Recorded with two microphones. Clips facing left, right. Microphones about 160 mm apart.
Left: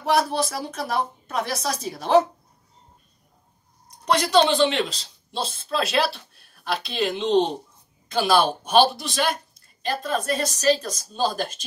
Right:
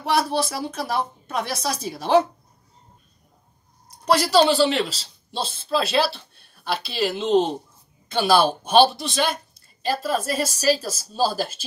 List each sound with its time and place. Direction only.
0.0 s a woman's voice: centre (ahead or behind)
3.9 s a man's voice: 5° right (ahead or behind)